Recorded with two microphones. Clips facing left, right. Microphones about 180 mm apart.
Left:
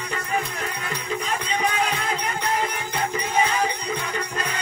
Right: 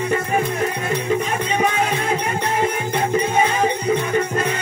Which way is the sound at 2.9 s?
25° right (ahead or behind).